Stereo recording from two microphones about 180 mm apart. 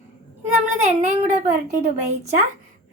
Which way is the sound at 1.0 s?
40° right (ahead or behind).